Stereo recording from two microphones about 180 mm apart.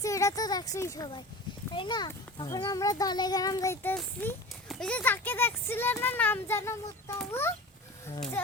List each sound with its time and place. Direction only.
0.0 s a child's voice: 20° left (ahead or behind)